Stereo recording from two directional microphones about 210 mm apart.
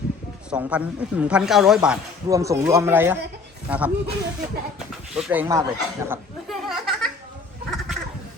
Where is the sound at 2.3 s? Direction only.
15° right (ahead or behind).